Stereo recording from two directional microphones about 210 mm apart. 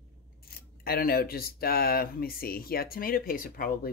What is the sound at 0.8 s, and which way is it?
Speech, 45° left (ahead or behind).